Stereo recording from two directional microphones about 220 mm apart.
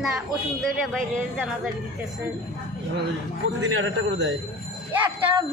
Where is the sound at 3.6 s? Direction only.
55° right (ahead or behind).